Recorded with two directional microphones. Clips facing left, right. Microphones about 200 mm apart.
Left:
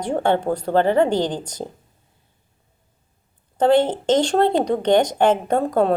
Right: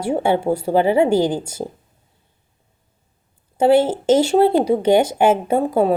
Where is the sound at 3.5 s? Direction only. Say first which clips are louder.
Right 2 dB; 10° right (ahead or behind).